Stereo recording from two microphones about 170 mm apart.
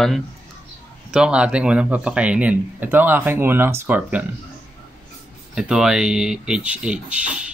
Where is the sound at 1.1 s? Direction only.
5° right (ahead or behind).